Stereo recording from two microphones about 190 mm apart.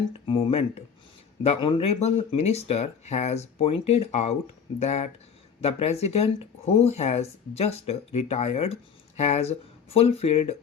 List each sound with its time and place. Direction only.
0.1 s speech: 30° left (ahead or behind)